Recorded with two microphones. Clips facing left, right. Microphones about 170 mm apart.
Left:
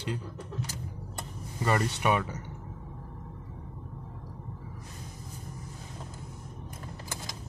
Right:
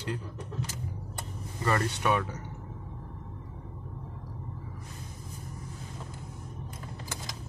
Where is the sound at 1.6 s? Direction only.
15° left (ahead or behind).